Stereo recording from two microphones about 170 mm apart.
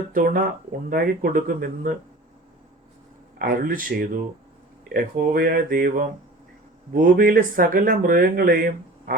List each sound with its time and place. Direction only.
0.1 s speech: 55° right (ahead or behind)
3.3 s speech: 55° right (ahead or behind)